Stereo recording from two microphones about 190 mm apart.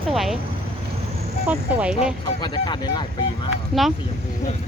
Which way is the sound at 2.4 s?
25° left (ahead or behind).